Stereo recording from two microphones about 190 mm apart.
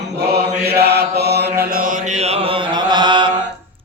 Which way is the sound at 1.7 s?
45° right (ahead or behind).